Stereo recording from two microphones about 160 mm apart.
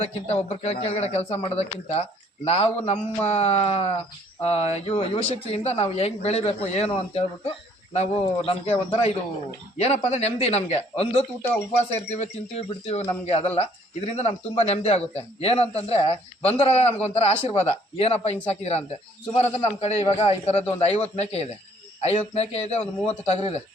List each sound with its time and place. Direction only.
0.0 s speech: 40° left (ahead or behind)